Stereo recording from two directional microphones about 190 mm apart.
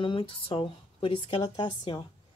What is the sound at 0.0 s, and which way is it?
Speech, 25° left (ahead or behind).